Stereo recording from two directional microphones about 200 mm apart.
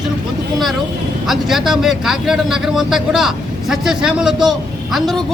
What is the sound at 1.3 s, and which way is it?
Speech, centre (ahead or behind).